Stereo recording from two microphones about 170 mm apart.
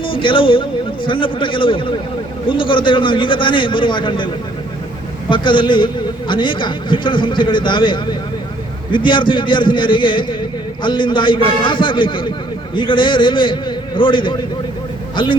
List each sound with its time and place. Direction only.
0.0 s a man's voice: 30° left (ahead or behind)
5.3 s a man's voice: 30° left (ahead or behind)